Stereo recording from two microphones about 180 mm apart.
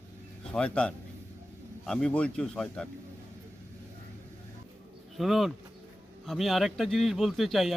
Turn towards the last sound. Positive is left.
turn(degrees=0)  # may be behind; listen again after turning